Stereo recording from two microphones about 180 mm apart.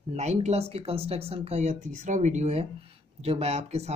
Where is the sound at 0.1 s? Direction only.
35° right (ahead or behind).